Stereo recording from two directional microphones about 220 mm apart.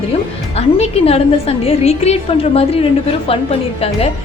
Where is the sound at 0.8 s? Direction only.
25° left (ahead or behind).